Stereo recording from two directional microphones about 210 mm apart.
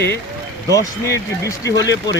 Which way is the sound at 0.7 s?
15° left (ahead or behind).